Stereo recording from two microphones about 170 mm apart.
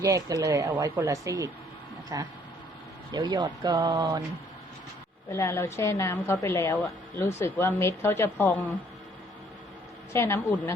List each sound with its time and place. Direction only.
0.0 s speech: 20° right (ahead or behind)
5.3 s a woman's voice: 15° left (ahead or behind)
10.1 s a woman's voice: 15° left (ahead or behind)